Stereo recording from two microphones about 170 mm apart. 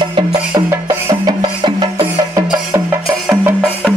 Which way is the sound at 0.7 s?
15° right (ahead or behind).